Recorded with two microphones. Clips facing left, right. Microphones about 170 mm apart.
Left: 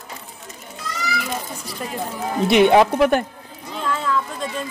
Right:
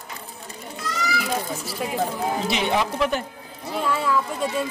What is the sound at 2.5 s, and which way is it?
Speech, 60° left (ahead or behind).